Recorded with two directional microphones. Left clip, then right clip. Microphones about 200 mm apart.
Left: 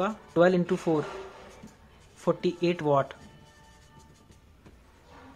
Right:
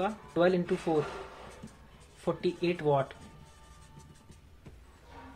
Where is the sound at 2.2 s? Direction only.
25° left (ahead or behind).